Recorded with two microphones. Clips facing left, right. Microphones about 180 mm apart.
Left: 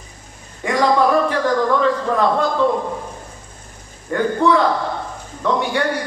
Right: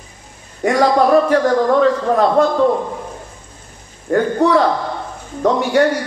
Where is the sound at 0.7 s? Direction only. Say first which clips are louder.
Right 3 dB; 40° right (ahead or behind).